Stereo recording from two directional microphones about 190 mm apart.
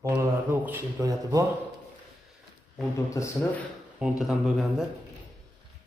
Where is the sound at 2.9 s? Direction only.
15° left (ahead or behind).